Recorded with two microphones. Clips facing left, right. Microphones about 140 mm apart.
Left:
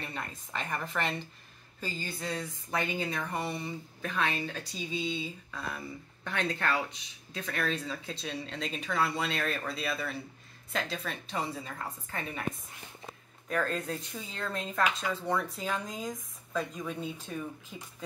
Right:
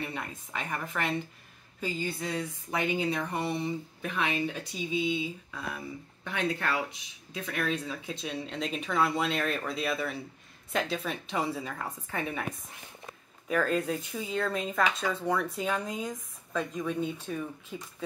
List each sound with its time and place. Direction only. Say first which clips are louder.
0.0 s speech: right 3 dB; 10° right (ahead or behind)
13.5 s speech: right 4 dB; 10° right (ahead or behind)